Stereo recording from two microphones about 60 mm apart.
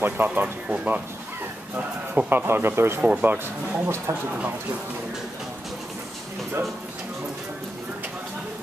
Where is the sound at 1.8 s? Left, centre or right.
Right.